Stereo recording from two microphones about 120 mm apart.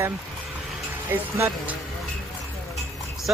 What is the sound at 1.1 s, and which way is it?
Speech, 15° right (ahead or behind).